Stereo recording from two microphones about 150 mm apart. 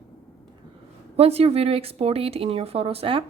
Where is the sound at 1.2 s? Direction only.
45° right (ahead or behind).